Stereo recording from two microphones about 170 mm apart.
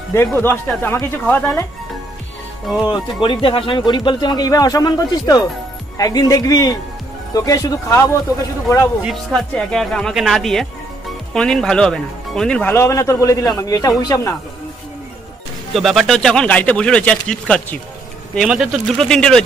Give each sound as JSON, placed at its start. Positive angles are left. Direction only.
{"t": 0.1, "sound": "speech", "side_deg": 15}
{"t": 2.9, "sound": "speech", "side_deg": 30}
{"t": 9.0, "sound": "speech", "side_deg": 5}
{"t": 15.7, "sound": "speech", "side_deg": 0}